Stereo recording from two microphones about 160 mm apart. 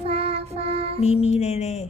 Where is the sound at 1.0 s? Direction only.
40° left (ahead or behind).